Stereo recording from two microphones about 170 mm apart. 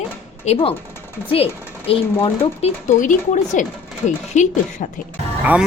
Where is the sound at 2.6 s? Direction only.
35° left (ahead or behind).